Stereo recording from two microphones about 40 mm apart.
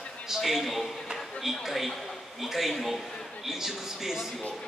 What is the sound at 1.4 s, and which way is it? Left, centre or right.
A man's voice, centre.